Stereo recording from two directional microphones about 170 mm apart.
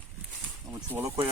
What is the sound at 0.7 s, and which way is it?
Speech, 15° right (ahead or behind).